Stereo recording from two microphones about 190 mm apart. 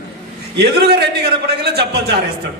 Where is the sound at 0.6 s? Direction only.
60° right (ahead or behind).